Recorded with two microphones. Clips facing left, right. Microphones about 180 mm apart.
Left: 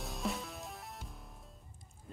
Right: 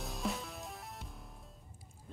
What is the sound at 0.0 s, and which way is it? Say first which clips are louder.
Music: even; centre (ahead or behind).